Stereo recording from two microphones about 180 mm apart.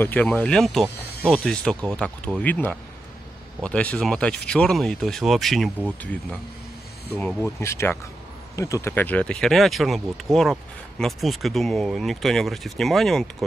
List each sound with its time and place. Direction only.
0.0 s speech: 10° left (ahead or behind)
0.9 s snake: 60° left (ahead or behind)
1.3 s speech: 5° left (ahead or behind)
7.2 s speech: 10° left (ahead or behind)